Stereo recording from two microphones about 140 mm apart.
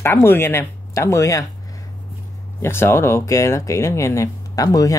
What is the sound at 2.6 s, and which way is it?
Speech, 15° left (ahead or behind).